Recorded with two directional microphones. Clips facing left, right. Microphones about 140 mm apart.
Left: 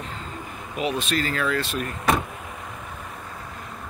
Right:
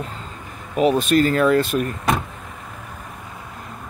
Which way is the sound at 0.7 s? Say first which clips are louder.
Right 9 dB; 45° right (ahead or behind).